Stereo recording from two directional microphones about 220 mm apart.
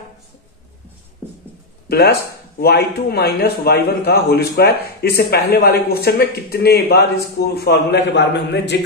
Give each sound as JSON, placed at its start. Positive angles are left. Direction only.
{"t": 1.9, "sound": "a man's voice", "side_deg": 45}